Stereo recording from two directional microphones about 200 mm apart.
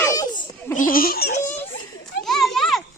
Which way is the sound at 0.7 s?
45° left (ahead or behind).